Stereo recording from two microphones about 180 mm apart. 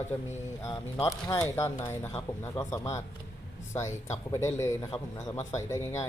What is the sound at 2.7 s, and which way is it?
A man's voice, 15° left (ahead or behind).